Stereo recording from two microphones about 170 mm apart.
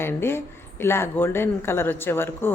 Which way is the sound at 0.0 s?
15° left (ahead or behind).